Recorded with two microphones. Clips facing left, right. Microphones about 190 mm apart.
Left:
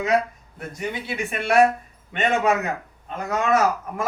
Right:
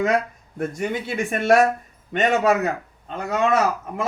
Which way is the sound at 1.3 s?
45° right (ahead or behind).